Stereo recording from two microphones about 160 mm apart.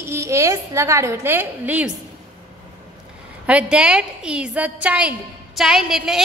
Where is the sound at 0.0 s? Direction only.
15° right (ahead or behind).